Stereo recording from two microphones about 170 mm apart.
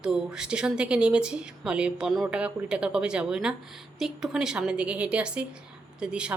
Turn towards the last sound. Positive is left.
turn(degrees=-5)  # may be behind; listen again after turning